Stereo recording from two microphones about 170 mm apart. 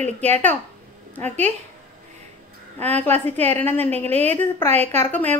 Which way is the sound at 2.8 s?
10° left (ahead or behind).